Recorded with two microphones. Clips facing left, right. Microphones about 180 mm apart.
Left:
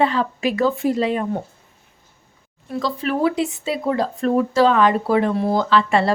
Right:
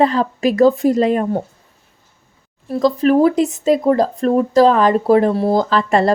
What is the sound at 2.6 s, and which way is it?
Speech, 40° right (ahead or behind).